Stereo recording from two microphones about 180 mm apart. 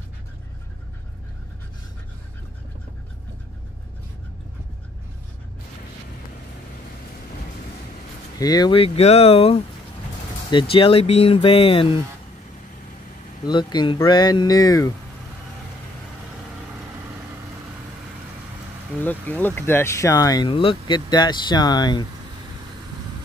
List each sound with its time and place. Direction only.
8.4 s speech: 20° left (ahead or behind)
13.5 s speech: 25° left (ahead or behind)
19.0 s speech: 10° left (ahead or behind)